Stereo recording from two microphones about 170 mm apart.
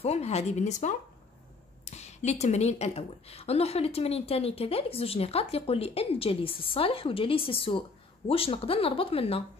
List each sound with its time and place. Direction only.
0.0 s a woman's voice: 40° left (ahead or behind)